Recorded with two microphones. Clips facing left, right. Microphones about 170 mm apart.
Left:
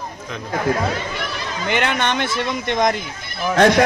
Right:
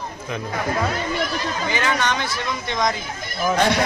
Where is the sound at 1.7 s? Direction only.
65° left (ahead or behind).